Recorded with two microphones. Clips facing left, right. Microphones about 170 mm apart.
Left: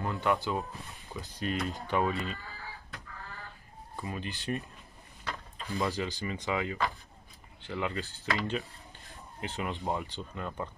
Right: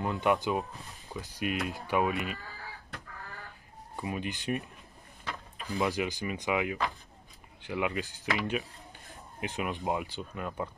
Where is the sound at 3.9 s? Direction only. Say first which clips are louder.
Right 3 dB; 15° right (ahead or behind).